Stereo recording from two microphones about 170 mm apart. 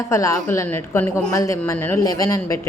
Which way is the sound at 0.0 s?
20° left (ahead or behind).